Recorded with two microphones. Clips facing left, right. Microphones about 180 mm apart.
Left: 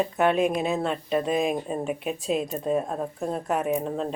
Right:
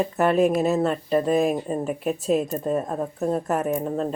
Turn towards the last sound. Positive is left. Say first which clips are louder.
# right 2 dB
turn(degrees=0)  # may be behind; listen again after turning